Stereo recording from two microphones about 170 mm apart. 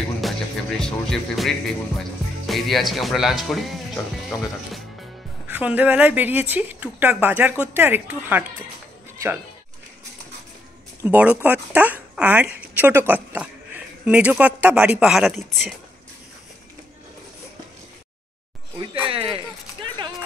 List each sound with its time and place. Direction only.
0.2 s music: 5° left (ahead or behind)
5.5 s a woman's voice: 10° right (ahead or behind)
11.0 s speech: 10° right (ahead or behind)
19.0 s speech: 30° right (ahead or behind)